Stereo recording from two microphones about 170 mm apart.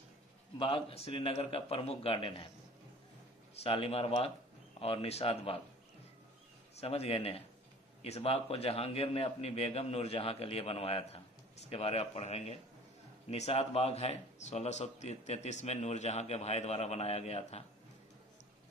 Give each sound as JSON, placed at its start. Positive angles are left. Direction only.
{"t": 0.6, "sound": "speech", "side_deg": 35}
{"t": 3.6, "sound": "speech", "side_deg": 35}
{"t": 6.7, "sound": "speech", "side_deg": 35}